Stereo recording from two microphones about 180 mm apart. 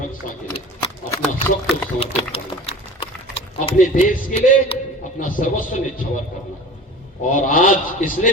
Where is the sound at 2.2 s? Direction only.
30° left (ahead or behind).